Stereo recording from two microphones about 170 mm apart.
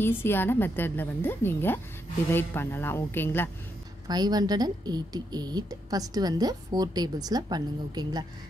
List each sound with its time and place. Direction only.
0.0 s a woman's voice: 15° left (ahead or behind)
4.1 s a woman's voice: 25° right (ahead or behind)